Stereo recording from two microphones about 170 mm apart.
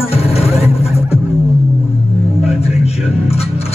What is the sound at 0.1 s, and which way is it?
Music, 35° left (ahead or behind).